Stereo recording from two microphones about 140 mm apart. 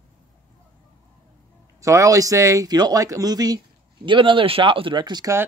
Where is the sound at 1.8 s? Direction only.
20° right (ahead or behind).